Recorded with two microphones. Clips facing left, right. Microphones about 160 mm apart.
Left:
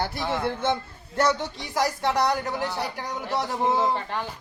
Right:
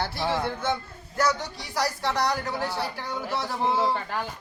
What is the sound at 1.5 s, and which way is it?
A man's voice, 20° left (ahead or behind).